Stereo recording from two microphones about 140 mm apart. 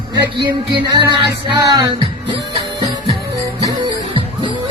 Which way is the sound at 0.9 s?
35° right (ahead or behind).